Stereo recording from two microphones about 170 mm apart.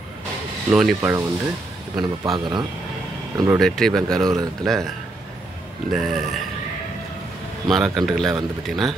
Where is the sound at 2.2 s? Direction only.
25° right (ahead or behind).